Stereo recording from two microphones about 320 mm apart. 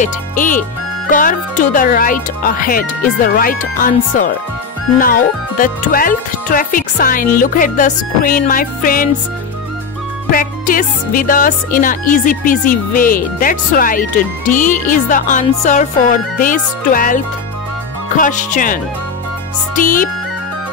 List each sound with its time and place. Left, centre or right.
0.0 s speech: left
10.3 s speech: left